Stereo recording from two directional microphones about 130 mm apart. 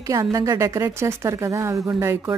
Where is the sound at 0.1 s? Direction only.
25° right (ahead or behind).